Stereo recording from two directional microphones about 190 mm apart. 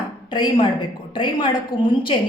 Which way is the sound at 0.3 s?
25° left (ahead or behind).